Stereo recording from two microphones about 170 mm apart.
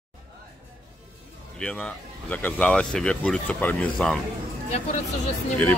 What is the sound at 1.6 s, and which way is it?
Speech, 5° left (ahead or behind).